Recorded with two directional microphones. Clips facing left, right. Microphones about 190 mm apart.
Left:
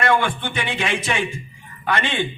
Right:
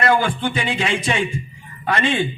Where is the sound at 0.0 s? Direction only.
30° right (ahead or behind).